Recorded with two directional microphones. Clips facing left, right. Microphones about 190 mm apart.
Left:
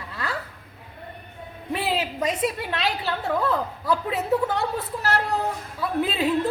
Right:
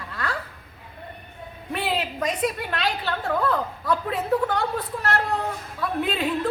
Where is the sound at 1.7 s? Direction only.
Centre (ahead or behind).